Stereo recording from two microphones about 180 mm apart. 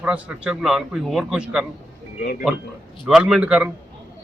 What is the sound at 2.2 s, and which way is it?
Speech, 60° left (ahead or behind).